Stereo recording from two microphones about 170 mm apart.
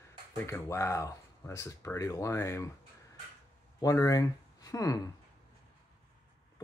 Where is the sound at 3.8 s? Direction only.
20° left (ahead or behind).